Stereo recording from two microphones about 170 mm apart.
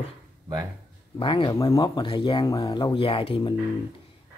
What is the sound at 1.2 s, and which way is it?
Speech, 30° left (ahead or behind).